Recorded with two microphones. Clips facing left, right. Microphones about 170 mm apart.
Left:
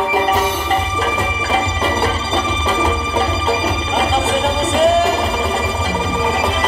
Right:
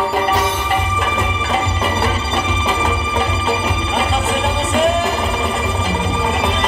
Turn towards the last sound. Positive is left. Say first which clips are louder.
# left 3 dB
turn(degrees=40)  # may be behind; listen again after turning